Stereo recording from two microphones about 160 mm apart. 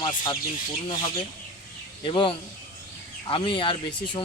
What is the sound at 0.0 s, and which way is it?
Speech, 30° left (ahead or behind).